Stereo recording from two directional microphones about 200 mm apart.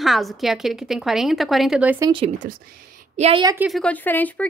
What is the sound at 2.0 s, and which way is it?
A woman's voice, 25° right (ahead or behind).